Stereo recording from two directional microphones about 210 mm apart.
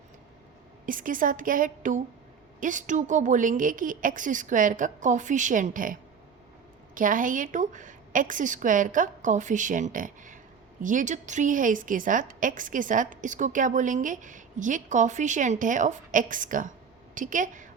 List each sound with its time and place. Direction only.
0.9 s a woman's voice: 40° right (ahead or behind)